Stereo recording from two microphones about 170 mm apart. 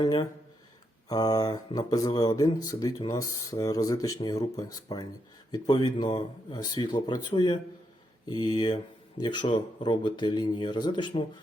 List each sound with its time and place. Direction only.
0.0 s speech: 25° left (ahead or behind)